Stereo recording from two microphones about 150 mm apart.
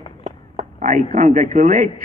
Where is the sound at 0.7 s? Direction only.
60° right (ahead or behind).